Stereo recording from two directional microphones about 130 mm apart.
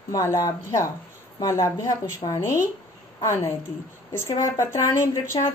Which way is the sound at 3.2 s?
25° left (ahead or behind).